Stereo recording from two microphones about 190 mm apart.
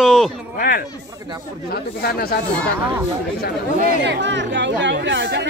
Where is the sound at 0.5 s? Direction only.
50° left (ahead or behind).